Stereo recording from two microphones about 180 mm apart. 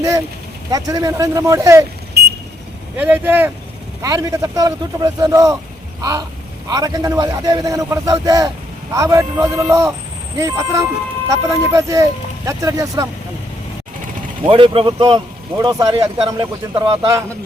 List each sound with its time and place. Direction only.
0.7 s speech: 20° right (ahead or behind)
2.2 s vehicle: 65° right (ahead or behind)
3.0 s a man's voice: 10° right (ahead or behind)
6.0 s a sound: 20° right (ahead or behind)
6.7 s a man's voice: 20° right (ahead or behind)
14.4 s a man's voice: 30° right (ahead or behind)